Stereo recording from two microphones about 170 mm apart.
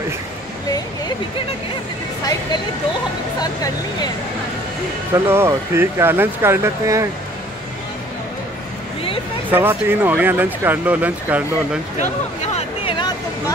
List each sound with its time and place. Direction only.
3.3 s speech: 25° left (ahead or behind)
5.1 s speech: 15° right (ahead or behind)
9.5 s speech: 10° right (ahead or behind)
12.0 s a sound: 40° left (ahead or behind)